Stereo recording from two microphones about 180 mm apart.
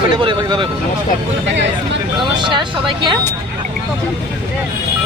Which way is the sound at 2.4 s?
25° right (ahead or behind).